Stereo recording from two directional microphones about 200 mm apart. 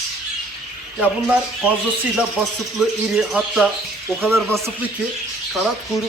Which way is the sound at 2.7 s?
5° right (ahead or behind).